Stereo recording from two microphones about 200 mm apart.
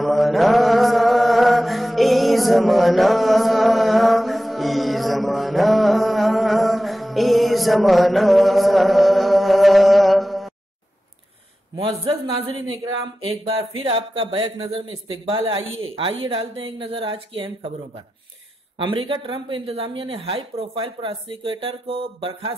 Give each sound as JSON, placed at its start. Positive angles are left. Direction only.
{"t": 0.0, "sound": "mantra", "side_deg": 0}
{"t": 11.7, "sound": "speech", "side_deg": -25}
{"t": 18.8, "sound": "speech", "side_deg": -25}